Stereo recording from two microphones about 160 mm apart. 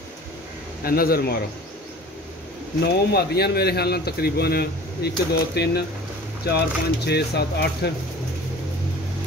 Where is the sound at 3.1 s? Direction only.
85° left.